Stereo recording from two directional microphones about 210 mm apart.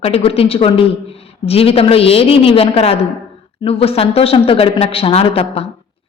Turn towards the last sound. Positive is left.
turn(degrees=25)  # may be behind; listen again after turning